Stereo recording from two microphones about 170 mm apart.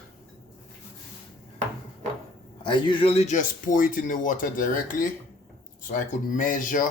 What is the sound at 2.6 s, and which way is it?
A man's voice, 30° left (ahead or behind).